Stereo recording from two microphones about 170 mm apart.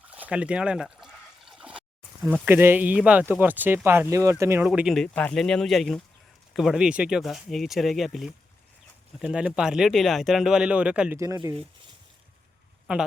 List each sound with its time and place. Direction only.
0.1 s liquid: 10° right (ahead or behind)
2.2 s speech: 10° right (ahead or behind)
4.6 s speech: 5° right (ahead or behind)
5.0 s speech: 5° left (ahead or behind)
11.2 s speech: 20° right (ahead or behind)
12.9 s speech: 5° right (ahead or behind)